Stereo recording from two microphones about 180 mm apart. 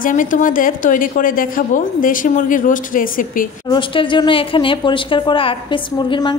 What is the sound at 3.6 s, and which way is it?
A woman's voice, 25° left (ahead or behind).